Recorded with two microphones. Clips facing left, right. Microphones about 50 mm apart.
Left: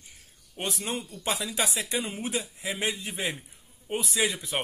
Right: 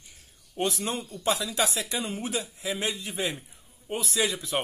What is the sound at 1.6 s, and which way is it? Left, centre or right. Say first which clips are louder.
Speech: right 1 dB; centre.